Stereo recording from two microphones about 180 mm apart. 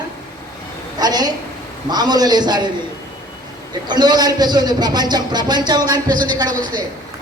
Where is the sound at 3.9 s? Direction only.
25° right (ahead or behind).